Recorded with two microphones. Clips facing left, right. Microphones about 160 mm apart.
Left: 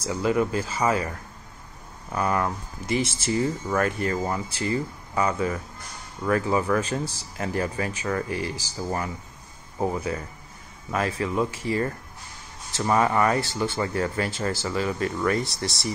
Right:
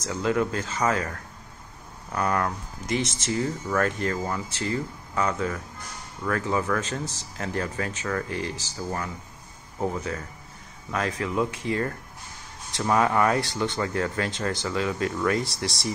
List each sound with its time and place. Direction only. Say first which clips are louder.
0.0 s speech: left 2 dB; 5° left (ahead or behind)
2.1 s speech: left 1 dB; 5° left (ahead or behind)